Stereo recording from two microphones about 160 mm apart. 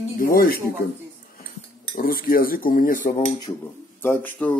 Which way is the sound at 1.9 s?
65° left (ahead or behind).